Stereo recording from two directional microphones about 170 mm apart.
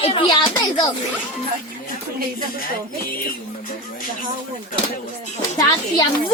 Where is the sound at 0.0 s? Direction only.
30° left (ahead or behind).